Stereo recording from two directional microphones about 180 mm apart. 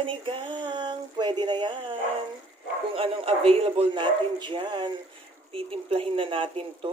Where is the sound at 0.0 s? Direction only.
30° right (ahead or behind).